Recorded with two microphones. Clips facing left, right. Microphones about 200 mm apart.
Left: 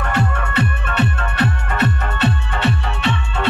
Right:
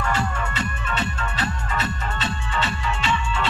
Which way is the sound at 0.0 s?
60° left (ahead or behind).